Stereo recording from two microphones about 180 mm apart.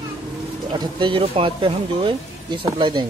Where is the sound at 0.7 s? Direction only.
25° right (ahead or behind).